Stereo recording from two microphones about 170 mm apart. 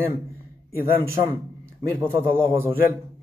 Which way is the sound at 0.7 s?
60° left (ahead or behind).